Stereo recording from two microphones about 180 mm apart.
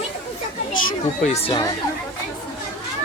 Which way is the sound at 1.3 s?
30° left (ahead or behind).